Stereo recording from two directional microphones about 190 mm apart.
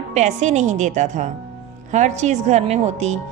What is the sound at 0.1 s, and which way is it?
A woman's voice, 35° right (ahead or behind).